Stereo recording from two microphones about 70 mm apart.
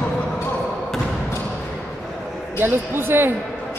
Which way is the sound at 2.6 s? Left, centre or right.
Right.